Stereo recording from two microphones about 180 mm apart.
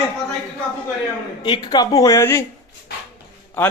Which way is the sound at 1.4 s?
25° left (ahead or behind).